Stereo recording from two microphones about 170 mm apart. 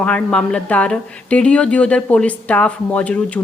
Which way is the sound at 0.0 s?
5° left (ahead or behind).